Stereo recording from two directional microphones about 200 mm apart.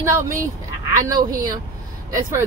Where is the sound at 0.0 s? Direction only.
15° right (ahead or behind).